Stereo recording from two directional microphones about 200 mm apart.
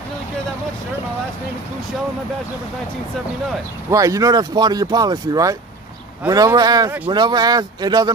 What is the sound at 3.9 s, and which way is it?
Speech, 15° right (ahead or behind).